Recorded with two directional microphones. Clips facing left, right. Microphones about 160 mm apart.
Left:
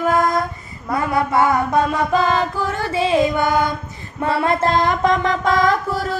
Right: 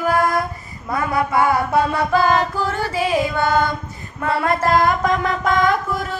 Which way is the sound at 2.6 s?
25° left (ahead or behind).